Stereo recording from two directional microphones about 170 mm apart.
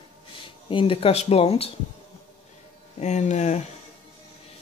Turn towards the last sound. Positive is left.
turn(degrees=40)  # may be behind; listen again after turning